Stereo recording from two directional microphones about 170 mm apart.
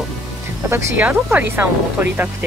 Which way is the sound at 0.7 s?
15° right (ahead or behind).